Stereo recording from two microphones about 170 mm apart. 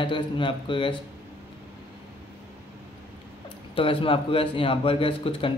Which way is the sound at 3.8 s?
30° left (ahead or behind).